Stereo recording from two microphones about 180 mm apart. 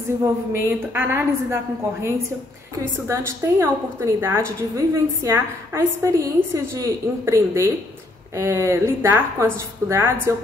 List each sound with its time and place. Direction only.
0.5 s a woman's voice: 15° right (ahead or behind)
3.1 s a woman's voice: 15° right (ahead or behind)